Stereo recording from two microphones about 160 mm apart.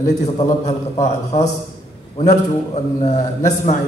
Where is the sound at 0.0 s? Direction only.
45° left (ahead or behind).